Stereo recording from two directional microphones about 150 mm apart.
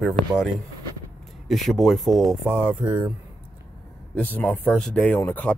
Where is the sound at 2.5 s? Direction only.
15° right (ahead or behind).